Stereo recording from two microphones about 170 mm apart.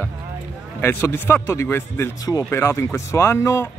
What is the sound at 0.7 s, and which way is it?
A man's voice, 15° left (ahead or behind).